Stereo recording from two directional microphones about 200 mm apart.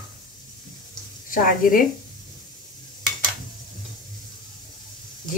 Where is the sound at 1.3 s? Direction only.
45° left (ahead or behind).